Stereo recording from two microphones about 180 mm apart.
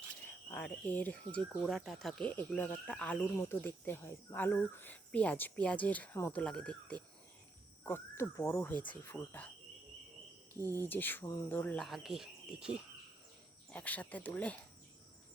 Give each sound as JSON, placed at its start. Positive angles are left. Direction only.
{"t": 0.5, "sound": "speech", "side_deg": 10}
{"t": 10.6, "sound": "speech", "side_deg": 10}
{"t": 13.7, "sound": "speech", "side_deg": 10}